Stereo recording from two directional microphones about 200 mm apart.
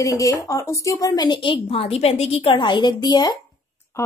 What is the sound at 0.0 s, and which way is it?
A woman's voice, 15° left (ahead or behind).